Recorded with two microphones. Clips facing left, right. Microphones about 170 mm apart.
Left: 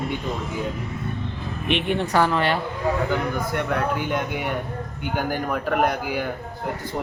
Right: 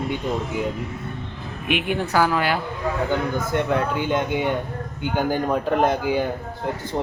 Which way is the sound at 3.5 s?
25° right (ahead or behind).